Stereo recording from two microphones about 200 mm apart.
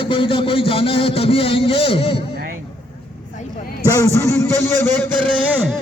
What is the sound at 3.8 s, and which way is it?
A man's voice, 15° left (ahead or behind).